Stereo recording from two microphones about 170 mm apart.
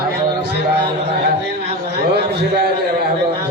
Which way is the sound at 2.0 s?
70° right (ahead or behind).